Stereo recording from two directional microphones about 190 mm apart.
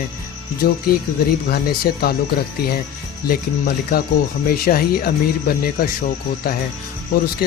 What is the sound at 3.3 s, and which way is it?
Speech, 50° left (ahead or behind).